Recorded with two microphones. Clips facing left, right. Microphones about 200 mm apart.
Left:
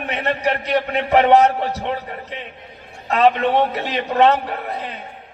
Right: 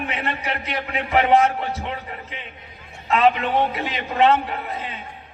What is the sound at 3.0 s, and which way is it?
A man's voice, 40° left (ahead or behind).